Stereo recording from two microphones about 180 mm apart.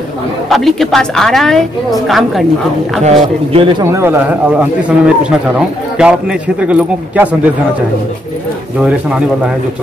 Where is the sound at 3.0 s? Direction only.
35° right (ahead or behind).